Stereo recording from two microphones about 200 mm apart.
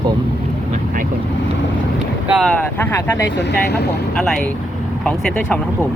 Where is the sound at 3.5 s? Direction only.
55° left (ahead or behind).